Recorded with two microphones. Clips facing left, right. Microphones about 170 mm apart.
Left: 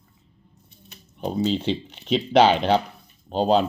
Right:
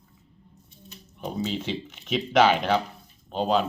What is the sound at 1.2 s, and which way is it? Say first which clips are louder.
Speech: left 6 dB; 30° left (ahead or behind).